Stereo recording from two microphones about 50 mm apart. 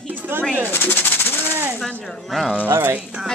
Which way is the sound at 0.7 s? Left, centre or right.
Left.